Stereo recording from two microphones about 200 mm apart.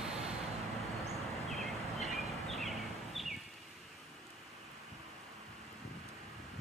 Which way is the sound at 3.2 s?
Centre (ahead or behind).